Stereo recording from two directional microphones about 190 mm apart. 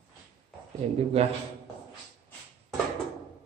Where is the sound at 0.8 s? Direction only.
30° right (ahead or behind).